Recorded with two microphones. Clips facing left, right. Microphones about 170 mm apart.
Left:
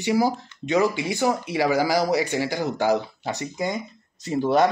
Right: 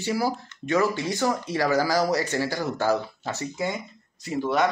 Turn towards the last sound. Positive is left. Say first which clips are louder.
# left 4 dB
turn(degrees=30)  # may be behind; listen again after turning